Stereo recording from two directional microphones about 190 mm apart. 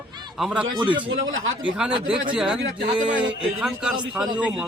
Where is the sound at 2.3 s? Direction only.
5° right (ahead or behind).